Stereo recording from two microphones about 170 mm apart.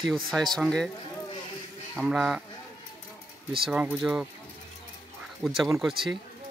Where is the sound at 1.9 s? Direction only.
Centre (ahead or behind).